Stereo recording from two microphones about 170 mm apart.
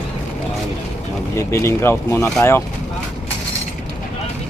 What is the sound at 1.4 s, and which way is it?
Speech, 15° left (ahead or behind).